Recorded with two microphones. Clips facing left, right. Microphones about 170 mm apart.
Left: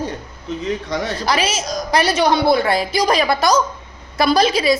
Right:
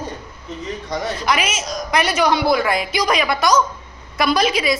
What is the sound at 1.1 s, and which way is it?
A woman's voice, 35° left (ahead or behind).